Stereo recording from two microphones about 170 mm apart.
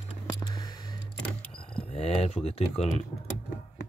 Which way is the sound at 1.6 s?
35° left (ahead or behind).